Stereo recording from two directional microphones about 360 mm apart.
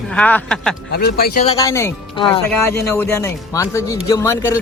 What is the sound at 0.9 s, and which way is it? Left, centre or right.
Speech, left.